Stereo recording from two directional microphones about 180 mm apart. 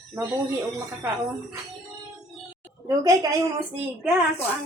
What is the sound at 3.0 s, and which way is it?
Speech, 20° right (ahead or behind).